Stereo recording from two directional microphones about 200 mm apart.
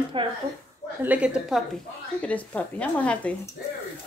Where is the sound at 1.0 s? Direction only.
5° right (ahead or behind).